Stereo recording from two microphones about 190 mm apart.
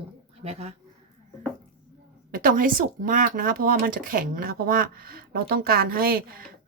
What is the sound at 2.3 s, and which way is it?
Speech, 50° right (ahead or behind).